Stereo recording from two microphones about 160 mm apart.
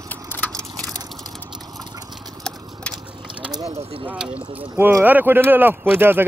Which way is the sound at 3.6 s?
35° right (ahead or behind).